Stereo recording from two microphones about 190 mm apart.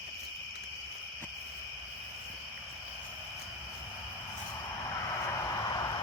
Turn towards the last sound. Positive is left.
turn(degrees=20)  # may be behind; listen again after turning